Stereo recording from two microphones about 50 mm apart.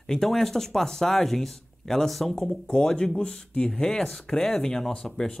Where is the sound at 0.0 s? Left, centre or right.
Centre.